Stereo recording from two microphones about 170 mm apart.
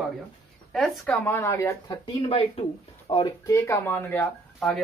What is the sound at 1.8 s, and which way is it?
Speech, 30° left (ahead or behind).